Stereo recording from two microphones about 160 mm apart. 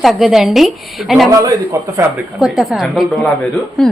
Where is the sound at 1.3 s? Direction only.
20° right (ahead or behind).